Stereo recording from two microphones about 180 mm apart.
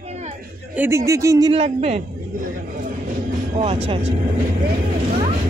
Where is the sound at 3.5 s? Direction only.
35° right (ahead or behind).